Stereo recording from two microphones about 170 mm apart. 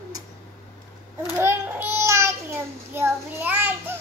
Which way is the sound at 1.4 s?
15° right (ahead or behind).